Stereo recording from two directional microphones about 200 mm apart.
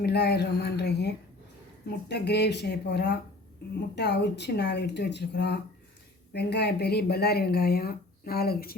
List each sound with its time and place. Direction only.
0.0 s speech: 55° left (ahead or behind)